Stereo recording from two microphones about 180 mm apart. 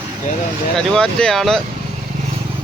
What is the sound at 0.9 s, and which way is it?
Speech, 5° left (ahead or behind).